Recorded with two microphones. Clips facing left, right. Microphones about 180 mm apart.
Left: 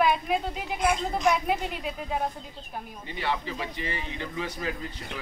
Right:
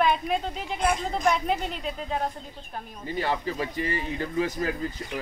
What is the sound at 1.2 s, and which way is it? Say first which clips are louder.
Speech: even; 5° left (ahead or behind).